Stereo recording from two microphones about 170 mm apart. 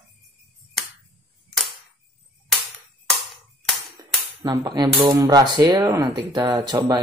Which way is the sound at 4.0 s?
25° right (ahead or behind).